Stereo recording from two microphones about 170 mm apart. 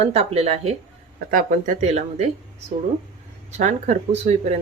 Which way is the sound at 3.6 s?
40° right (ahead or behind).